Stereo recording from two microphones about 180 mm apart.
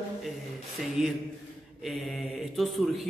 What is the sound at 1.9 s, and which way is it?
Speech, centre (ahead or behind).